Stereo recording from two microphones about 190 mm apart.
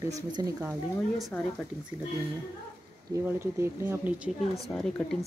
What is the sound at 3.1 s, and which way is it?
Speech, 15° right (ahead or behind).